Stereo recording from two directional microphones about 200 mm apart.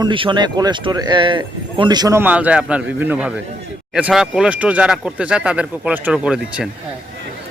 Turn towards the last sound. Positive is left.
turn(degrees=-5)  # may be behind; listen again after turning